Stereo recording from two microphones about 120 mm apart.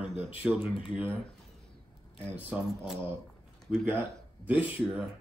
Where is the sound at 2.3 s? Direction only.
15° right (ahead or behind).